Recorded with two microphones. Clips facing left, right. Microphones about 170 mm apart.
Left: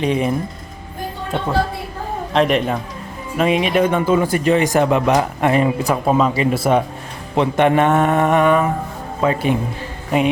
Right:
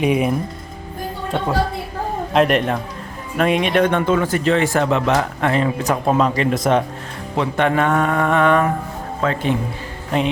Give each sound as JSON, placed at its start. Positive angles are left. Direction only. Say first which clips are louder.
{"t": 0.0, "sound": "speech", "louder": "right 1 dB", "side_deg": -5}
{"t": 2.3, "sound": "speech", "louder": "even", "side_deg": 0}
{"t": 7.3, "sound": "speech", "louder": "left 3 dB", "side_deg": 20}